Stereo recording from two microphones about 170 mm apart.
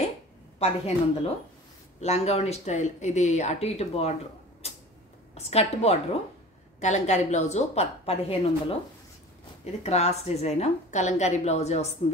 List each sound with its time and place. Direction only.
0.6 s speech: 35° left (ahead or behind)
4.6 s a sound: 40° left (ahead or behind)
5.3 s speech: 40° left (ahead or behind)
9.8 s speech: 40° left (ahead or behind)